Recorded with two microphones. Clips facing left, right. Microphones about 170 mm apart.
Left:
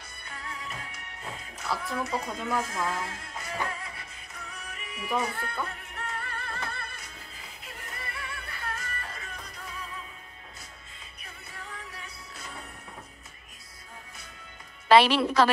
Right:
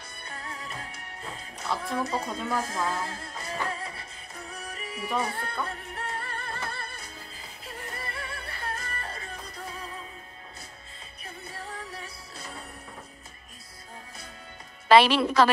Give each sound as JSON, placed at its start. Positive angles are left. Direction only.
{"t": 0.3, "sound": "music", "side_deg": -35}
{"t": 1.6, "sound": "speech", "side_deg": -30}
{"t": 4.5, "sound": "music", "side_deg": -35}
{"t": 11.5, "sound": "music", "side_deg": -30}
{"t": 14.9, "sound": "a woman's voice", "side_deg": -90}